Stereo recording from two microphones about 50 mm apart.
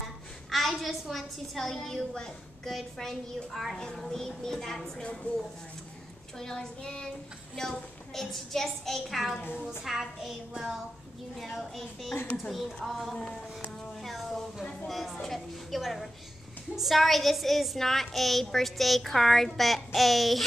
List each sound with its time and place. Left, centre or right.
0.5 s a child's voice: centre
5.0 s a woman's voice: left
6.3 s a woman's voice: centre
11.5 s a child's voice: centre
14.3 s a sound: centre
14.9 s a child's voice: centre